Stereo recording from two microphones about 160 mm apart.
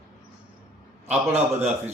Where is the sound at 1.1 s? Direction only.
45° right (ahead or behind).